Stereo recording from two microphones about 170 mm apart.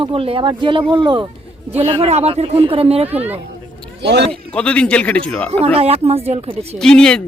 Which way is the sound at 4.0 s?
90° right.